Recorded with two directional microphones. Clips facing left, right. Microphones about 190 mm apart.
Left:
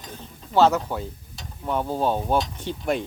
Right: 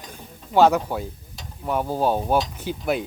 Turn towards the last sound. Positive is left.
turn(degrees=-5)  # may be behind; listen again after turning